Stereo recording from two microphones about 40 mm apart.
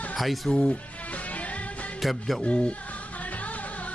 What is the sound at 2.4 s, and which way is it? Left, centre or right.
Speech, left.